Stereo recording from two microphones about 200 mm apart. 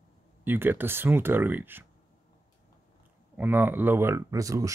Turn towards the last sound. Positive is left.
turn(degrees=-15)  # may be behind; listen again after turning